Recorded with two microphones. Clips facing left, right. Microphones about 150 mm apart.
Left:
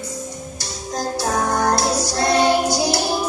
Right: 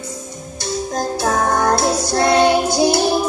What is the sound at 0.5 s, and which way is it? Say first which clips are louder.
Music: right 7 dB; 55° right (ahead or behind).